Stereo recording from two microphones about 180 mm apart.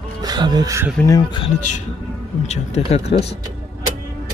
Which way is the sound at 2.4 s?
40° left (ahead or behind).